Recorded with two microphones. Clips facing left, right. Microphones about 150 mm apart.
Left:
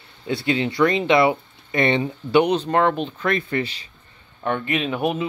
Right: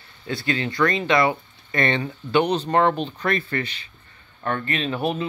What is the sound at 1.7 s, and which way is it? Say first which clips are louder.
Speech: left 3 dB; 5° left (ahead or behind).